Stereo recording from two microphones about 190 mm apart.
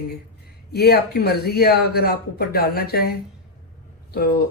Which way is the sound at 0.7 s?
55° left (ahead or behind).